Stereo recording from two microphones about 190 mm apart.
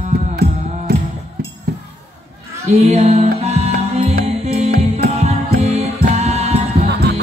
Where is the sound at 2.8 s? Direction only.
35° right (ahead or behind).